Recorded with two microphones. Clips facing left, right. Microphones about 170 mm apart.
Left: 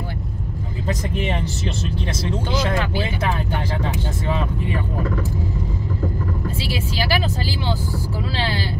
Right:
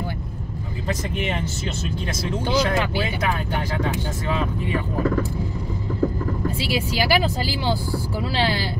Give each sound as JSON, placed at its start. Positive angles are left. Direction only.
{"t": 6.6, "sound": "speech", "side_deg": -15}